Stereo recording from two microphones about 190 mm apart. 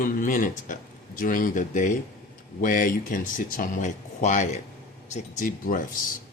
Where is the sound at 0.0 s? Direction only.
45° left (ahead or behind).